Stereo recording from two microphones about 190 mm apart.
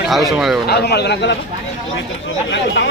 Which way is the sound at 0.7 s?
60° left (ahead or behind).